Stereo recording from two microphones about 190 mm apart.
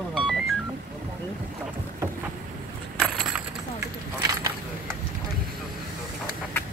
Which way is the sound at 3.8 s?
15° right (ahead or behind).